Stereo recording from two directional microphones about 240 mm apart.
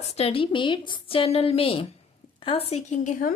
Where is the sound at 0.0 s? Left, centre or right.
Left.